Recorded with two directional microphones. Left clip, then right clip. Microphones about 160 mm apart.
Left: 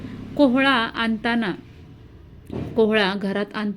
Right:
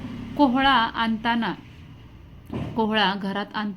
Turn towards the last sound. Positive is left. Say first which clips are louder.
# left 3 dB
turn(degrees=15)  # may be behind; listen again after turning